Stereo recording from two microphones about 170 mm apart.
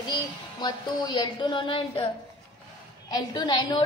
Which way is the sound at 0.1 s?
25° left (ahead or behind).